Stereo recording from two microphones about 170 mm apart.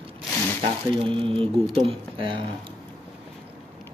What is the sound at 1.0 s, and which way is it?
Speech, 30° right (ahead or behind).